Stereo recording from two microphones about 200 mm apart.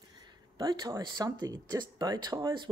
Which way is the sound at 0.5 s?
20° right (ahead or behind).